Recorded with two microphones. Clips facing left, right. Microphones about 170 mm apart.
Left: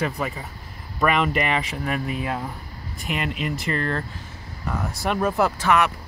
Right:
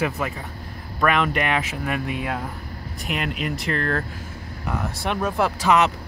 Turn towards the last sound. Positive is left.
turn(degrees=-20)  # may be behind; listen again after turning